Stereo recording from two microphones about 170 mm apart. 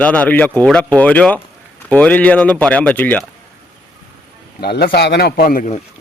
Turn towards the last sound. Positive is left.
turn(degrees=55)  # may be behind; listen again after turning